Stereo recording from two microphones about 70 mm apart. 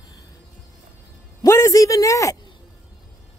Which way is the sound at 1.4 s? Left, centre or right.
Left.